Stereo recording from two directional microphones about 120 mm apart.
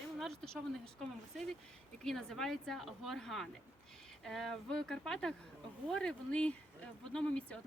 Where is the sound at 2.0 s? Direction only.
5° left (ahead or behind).